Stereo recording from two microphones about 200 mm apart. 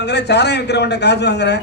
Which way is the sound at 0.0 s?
55° left (ahead or behind).